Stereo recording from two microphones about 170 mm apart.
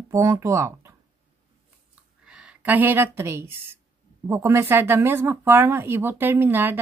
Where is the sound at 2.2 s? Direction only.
5° right (ahead or behind).